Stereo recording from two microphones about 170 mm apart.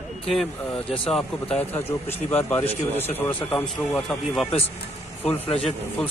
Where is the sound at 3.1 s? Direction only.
10° left (ahead or behind).